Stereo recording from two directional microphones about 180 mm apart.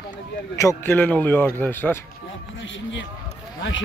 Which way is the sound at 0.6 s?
15° left (ahead or behind).